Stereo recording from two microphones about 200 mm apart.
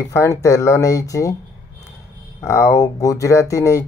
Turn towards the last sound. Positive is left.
turn(degrees=15)  # may be behind; listen again after turning